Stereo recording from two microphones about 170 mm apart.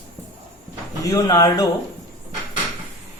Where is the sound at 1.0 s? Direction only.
20° left (ahead or behind).